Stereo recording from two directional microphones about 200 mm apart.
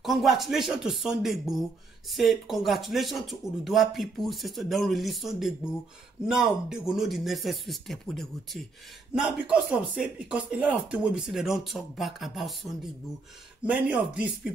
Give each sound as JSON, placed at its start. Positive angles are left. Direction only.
{"t": 0.0, "sound": "speech", "side_deg": 0}
{"t": 13.7, "sound": "speech", "side_deg": -5}